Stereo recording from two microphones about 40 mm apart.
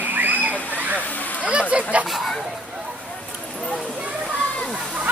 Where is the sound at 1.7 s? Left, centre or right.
Right.